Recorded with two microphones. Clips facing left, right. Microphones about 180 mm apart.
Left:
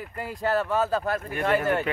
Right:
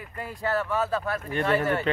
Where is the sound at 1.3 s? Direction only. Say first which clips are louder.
Even; 15° left (ahead or behind).